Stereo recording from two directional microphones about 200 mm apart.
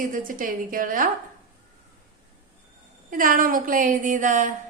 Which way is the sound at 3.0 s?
45° right (ahead or behind).